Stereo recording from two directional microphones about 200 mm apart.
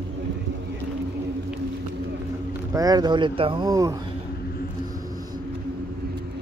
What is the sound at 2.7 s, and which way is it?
Speech, 20° right (ahead or behind).